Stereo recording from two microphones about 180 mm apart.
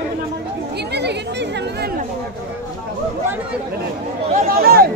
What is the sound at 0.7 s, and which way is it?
Chatter, 70° right (ahead or behind).